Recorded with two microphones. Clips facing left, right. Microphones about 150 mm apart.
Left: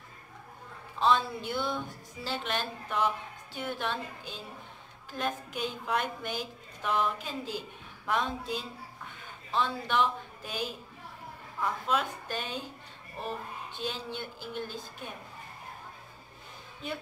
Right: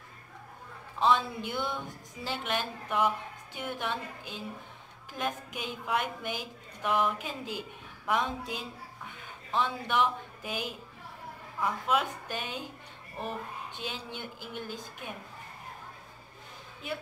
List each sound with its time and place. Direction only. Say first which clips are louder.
0.9 s a woman's voice: even; 15° right (ahead or behind)
13.7 s a woman's voice: left 5 dB; 15° right (ahead or behind)